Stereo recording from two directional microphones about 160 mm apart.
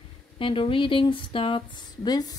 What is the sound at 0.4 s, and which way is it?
Speech, 30° left (ahead or behind).